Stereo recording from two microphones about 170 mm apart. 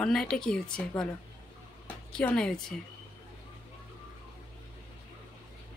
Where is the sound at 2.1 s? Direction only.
5° left (ahead or behind).